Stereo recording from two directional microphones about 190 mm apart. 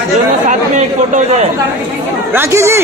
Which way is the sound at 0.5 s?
40° right (ahead or behind).